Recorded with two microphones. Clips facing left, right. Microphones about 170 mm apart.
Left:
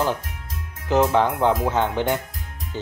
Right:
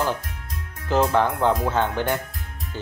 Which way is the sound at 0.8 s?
20° left (ahead or behind).